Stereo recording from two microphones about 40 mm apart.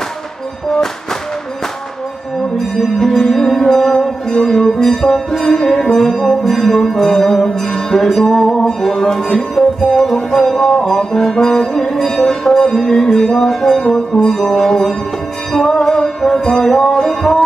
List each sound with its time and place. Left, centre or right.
3.1 s music: centre